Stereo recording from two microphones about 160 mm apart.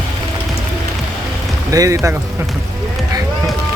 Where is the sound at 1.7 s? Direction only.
20° right (ahead or behind).